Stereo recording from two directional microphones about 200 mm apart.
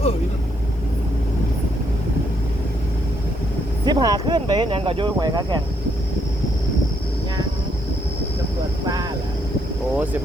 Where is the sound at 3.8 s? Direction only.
20° right (ahead or behind).